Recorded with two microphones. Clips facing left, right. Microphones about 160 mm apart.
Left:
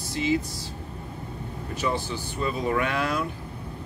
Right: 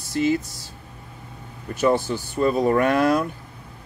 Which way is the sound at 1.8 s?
45° right (ahead or behind).